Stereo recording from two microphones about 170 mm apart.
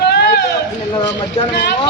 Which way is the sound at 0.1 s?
75° left (ahead or behind).